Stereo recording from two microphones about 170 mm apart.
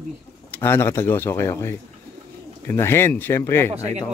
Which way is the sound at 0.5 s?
15° left (ahead or behind).